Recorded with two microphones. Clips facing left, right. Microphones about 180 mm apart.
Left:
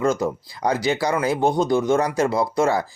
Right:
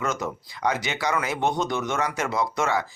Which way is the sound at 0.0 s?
30° left (ahead or behind).